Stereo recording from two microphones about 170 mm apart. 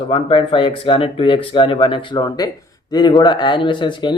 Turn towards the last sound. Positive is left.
turn(degrees=25)  # may be behind; listen again after turning